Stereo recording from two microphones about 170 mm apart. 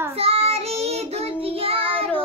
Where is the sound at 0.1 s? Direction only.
35° right (ahead or behind).